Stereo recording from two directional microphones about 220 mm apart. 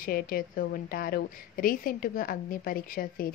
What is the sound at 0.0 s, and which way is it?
A woman's voice, 40° left (ahead or behind).